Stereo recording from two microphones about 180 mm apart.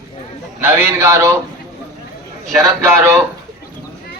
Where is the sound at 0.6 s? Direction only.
10° right (ahead or behind).